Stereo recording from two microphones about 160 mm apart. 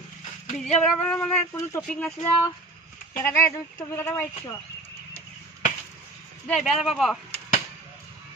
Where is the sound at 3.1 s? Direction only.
15° left (ahead or behind).